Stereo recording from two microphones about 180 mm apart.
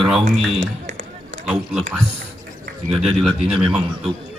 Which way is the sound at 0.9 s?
45° right (ahead or behind).